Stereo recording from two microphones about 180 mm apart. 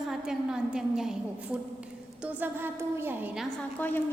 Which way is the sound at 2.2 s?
10° right (ahead or behind).